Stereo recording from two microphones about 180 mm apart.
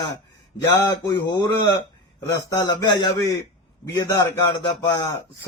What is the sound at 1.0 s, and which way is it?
A man's voice, 20° left (ahead or behind).